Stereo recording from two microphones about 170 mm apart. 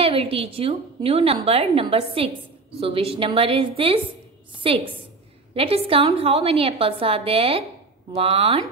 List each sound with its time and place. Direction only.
0.0 s a woman's voice: 35° right (ahead or behind)